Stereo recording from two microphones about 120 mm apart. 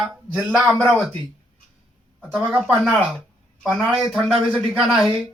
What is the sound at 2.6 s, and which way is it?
Speech, 10° right (ahead or behind).